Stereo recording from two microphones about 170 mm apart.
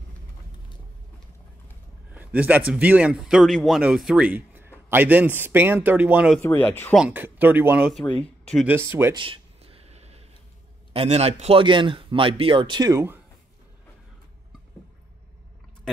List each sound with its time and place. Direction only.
2.1 s speech: 10° right (ahead or behind)
6.3 s speech: 10° left (ahead or behind)
7.0 s speech: 10° right (ahead or behind)
7.9 s speech: 5° left (ahead or behind)
8.6 s speech: 15° right (ahead or behind)
9.1 s a sound: 30° right (ahead or behind)
10.9 s a man's voice: 35° right (ahead or behind); by 13.2 s 15° right (ahead or behind)